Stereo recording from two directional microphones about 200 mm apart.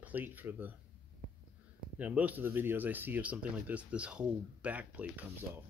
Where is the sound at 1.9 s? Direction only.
5° right (ahead or behind).